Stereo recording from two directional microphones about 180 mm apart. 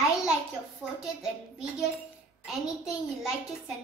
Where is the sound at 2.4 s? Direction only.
Centre (ahead or behind).